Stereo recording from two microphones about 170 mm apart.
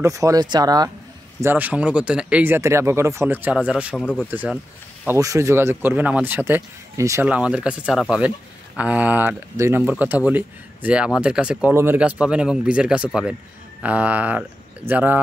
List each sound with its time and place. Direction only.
0.0 s speech: 20° right (ahead or behind)
1.4 s speech: 10° right (ahead or behind)
4.0 s speech: 10° left (ahead or behind)
4.3 s speech: 10° right (ahead or behind)